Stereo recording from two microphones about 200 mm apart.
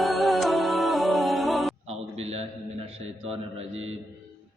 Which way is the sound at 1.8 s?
30° right (ahead or behind).